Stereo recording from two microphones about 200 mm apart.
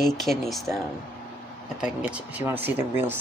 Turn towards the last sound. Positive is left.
turn(degrees=-10)  # may be behind; listen again after turning